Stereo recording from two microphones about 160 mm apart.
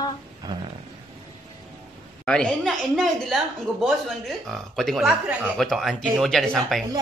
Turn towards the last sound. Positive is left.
turn(degrees=0)  # may be behind; listen again after turning